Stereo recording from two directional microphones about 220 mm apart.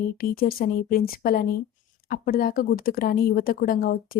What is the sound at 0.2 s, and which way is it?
A woman's voice, 40° left (ahead or behind).